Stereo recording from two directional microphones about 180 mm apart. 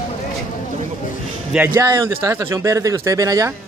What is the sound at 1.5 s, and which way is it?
Speech, 10° right (ahead or behind).